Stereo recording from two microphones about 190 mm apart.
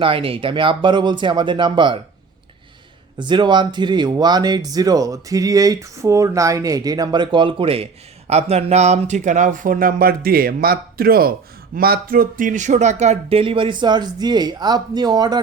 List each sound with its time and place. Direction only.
0.0 s speech: 30° right (ahead or behind)
3.2 s speech: 25° right (ahead or behind)